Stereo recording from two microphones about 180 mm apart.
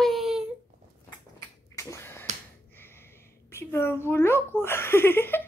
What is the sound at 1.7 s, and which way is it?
Finger snapping, 15° left (ahead or behind).